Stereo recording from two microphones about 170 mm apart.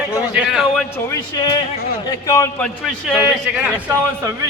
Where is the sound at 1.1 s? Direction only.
25° left (ahead or behind).